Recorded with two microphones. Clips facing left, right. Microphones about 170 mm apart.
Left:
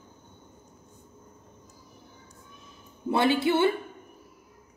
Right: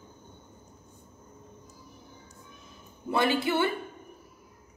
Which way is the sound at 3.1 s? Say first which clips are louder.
Left 3 dB; 20° left (ahead or behind).